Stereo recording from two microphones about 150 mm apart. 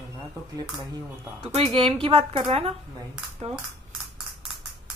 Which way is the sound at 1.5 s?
35° right (ahead or behind).